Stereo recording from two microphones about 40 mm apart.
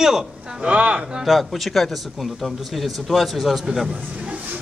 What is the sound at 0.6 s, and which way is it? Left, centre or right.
Speech, right.